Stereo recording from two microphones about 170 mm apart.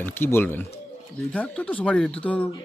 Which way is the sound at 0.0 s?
10° left (ahead or behind).